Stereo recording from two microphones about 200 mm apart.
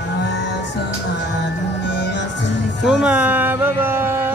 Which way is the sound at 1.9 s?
60° left (ahead or behind).